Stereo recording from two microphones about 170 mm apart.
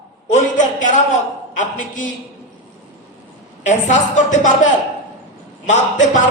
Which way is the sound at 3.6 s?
45° left (ahead or behind).